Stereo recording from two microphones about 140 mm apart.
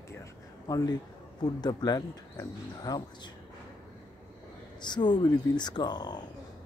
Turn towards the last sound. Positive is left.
turn(degrees=30)  # may be behind; listen again after turning